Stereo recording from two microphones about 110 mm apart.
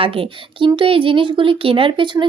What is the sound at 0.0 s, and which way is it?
Speech, 55° right (ahead or behind).